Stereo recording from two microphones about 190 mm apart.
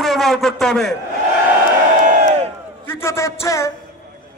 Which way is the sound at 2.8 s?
15° left (ahead or behind).